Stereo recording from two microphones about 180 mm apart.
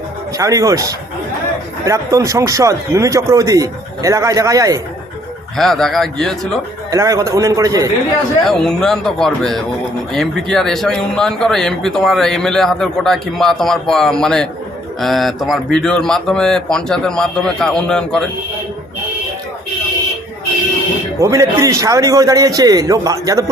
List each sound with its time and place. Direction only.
0.3 s speech: 20° right (ahead or behind)
5.5 s speech: centre (ahead or behind)
6.9 s speech: 20° right (ahead or behind)
8.4 s speech: 5° left (ahead or behind)
21.2 s speech: 15° right (ahead or behind)